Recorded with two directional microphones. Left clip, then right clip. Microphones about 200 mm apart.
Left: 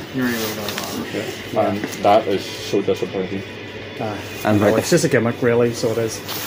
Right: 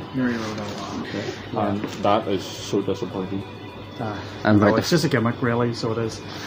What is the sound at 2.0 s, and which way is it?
Speech, 35° right (ahead or behind).